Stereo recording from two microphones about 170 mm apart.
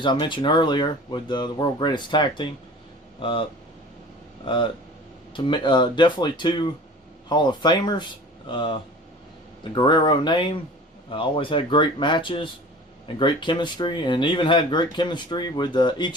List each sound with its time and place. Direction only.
0.0 s speech: 30° left (ahead or behind)
4.4 s speech: 30° left (ahead or behind)